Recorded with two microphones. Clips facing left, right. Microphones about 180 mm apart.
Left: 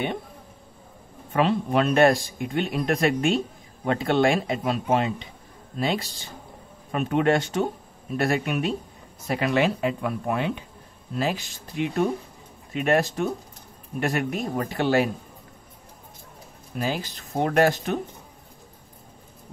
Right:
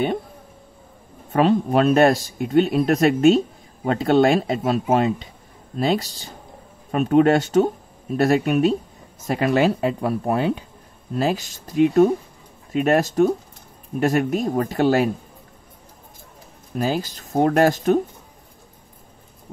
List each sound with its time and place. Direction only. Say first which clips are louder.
1.3 s speech: right 5 dB; 40° right (ahead or behind)
6.9 s speech: right 6 dB; 40° right (ahead or behind)
16.7 s speech: right 5 dB; 40° right (ahead or behind)